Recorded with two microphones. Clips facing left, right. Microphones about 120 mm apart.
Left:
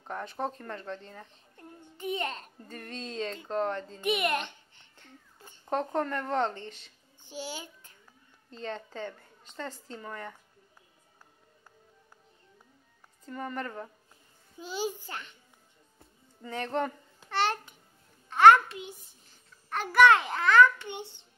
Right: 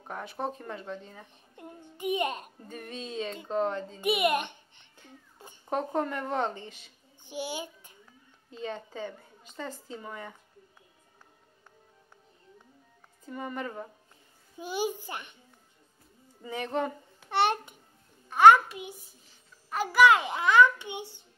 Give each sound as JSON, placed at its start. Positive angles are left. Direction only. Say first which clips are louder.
{"t": 0.0, "sound": "a child's voice", "louder": "even", "side_deg": -10}
{"t": 13.2, "sound": "a child's voice", "louder": "even", "side_deg": -10}
{"t": 16.4, "sound": "a child's voice", "louder": "even", "side_deg": -10}